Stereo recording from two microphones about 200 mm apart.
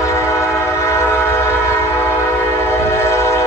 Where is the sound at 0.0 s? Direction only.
15° left (ahead or behind).